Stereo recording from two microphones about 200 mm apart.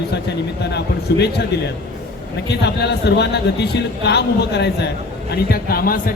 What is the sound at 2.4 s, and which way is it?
A man's voice, 55° left (ahead or behind).